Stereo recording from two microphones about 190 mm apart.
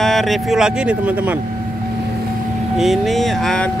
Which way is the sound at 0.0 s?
Centre (ahead or behind).